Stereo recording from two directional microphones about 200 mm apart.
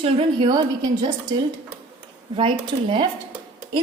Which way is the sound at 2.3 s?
25° right (ahead or behind).